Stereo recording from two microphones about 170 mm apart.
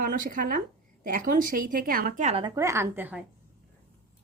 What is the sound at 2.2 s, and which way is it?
Speech, 35° right (ahead or behind).